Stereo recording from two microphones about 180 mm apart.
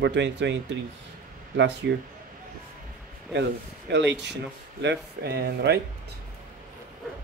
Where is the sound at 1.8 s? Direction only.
75° right (ahead or behind).